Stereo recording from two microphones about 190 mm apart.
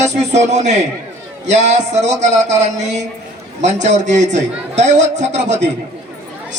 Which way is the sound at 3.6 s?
40° right (ahead or behind).